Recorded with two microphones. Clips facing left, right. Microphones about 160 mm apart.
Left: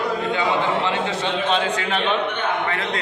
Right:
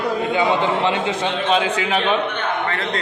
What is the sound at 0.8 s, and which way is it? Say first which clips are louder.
A man's voice: right 3 dB; 15° right (ahead or behind).